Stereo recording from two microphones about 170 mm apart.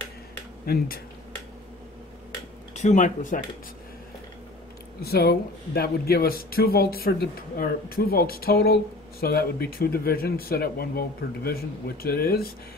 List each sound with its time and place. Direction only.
0.7 s speech: 65° left (ahead or behind)
2.7 s speech: 45° left (ahead or behind)
5.0 s speech: 65° left (ahead or behind)